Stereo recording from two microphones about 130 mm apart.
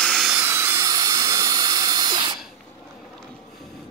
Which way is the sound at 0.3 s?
15° right (ahead or behind).